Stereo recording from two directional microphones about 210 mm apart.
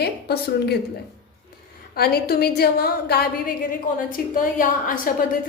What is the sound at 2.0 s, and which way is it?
A woman's voice, 45° left (ahead or behind).